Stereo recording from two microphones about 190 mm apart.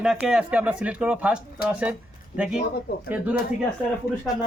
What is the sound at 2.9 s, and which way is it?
Speech, 55° left (ahead or behind).